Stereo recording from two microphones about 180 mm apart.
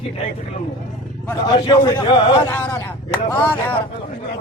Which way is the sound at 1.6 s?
25° left (ahead or behind).